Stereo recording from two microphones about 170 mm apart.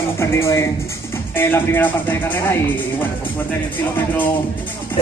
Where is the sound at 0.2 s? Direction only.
15° left (ahead or behind).